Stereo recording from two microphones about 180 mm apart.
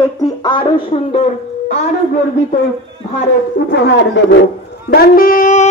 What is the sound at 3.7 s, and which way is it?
Speech, 75° left (ahead or behind).